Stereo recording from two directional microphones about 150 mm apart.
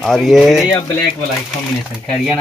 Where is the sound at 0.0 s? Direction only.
Centre (ahead or behind).